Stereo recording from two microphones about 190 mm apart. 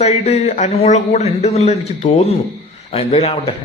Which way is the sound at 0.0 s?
35° left (ahead or behind).